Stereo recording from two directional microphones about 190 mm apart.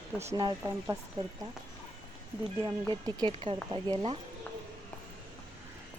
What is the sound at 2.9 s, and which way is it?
Speech, 25° right (ahead or behind).